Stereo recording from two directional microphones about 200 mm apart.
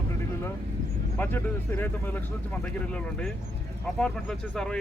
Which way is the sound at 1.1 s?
10° left (ahead or behind).